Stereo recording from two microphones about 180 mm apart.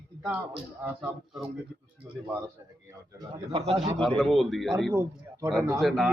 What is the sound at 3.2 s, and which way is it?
Speech, 30° right (ahead or behind).